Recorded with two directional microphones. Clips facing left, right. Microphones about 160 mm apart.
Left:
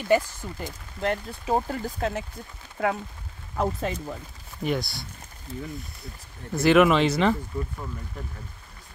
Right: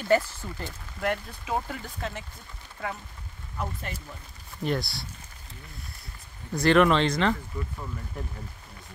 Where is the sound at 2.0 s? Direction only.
45° left (ahead or behind).